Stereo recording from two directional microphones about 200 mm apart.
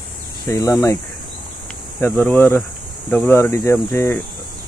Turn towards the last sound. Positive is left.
turn(degrees=10)  # may be behind; listen again after turning